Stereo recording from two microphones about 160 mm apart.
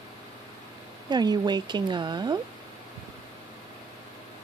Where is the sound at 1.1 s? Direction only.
25° right (ahead or behind).